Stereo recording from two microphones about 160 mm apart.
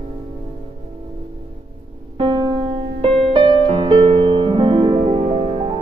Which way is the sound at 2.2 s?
35° right (ahead or behind).